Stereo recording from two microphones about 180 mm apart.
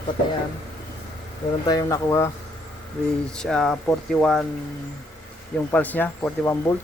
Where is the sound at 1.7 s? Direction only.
20° left (ahead or behind).